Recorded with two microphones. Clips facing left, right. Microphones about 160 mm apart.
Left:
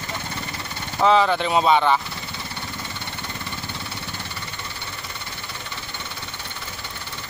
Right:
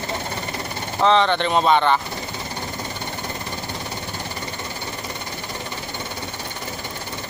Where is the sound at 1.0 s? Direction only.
5° left (ahead or behind).